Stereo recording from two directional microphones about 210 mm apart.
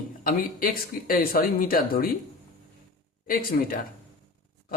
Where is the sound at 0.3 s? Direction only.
40° left (ahead or behind).